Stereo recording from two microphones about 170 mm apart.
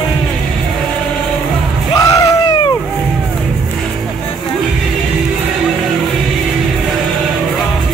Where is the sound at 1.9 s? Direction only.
20° left (ahead or behind).